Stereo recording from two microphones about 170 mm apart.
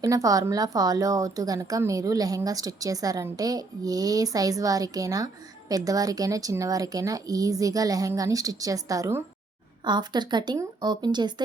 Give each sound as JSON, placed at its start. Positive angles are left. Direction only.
{"t": 0.0, "sound": "a woman's voice", "side_deg": -20}